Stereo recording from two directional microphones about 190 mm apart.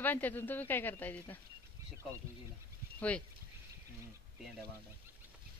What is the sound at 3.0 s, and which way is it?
Speech, 5° left (ahead or behind).